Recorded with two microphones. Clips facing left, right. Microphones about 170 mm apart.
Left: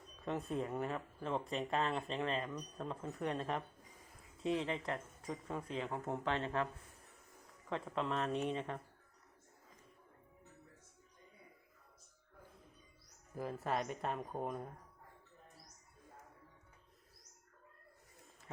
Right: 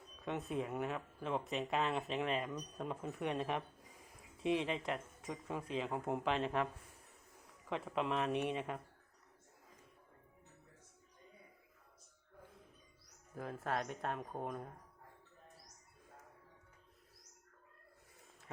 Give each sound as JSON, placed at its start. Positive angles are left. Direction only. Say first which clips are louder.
{"t": 0.3, "sound": "speech", "louder": "left 1 dB", "side_deg": 0}
{"t": 4.4, "sound": "speech", "louder": "right 1 dB", "side_deg": -20}
{"t": 5.2, "sound": "speech", "louder": "even", "side_deg": -5}
{"t": 7.7, "sound": "speech", "louder": "right 1 dB", "side_deg": -10}
{"t": 13.3, "sound": "speech", "louder": "left 1 dB", "side_deg": 5}
{"t": 18.4, "sound": "a sound", "louder": "left 1 dB", "side_deg": 0}